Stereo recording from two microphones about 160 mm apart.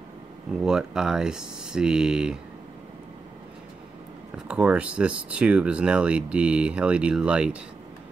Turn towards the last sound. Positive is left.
turn(degrees=-5)  # may be behind; listen again after turning